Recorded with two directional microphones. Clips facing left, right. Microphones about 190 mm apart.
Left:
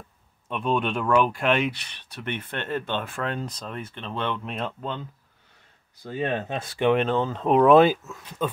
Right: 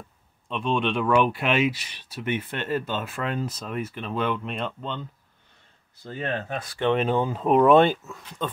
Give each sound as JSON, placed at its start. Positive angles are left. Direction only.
{"t": 0.5, "sound": "speech", "side_deg": 5}
{"t": 6.0, "sound": "speech", "side_deg": 15}
{"t": 7.1, "sound": "speech", "side_deg": -10}